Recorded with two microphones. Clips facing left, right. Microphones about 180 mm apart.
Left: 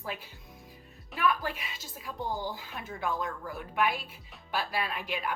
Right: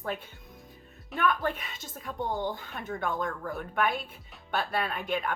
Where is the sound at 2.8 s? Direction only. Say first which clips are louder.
Right 5 dB; 45° right (ahead or behind).